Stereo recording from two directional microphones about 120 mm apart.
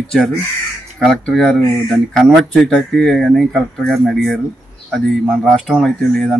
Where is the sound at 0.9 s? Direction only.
Centre (ahead or behind).